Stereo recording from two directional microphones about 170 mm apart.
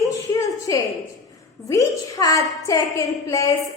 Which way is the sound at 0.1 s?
20° left (ahead or behind).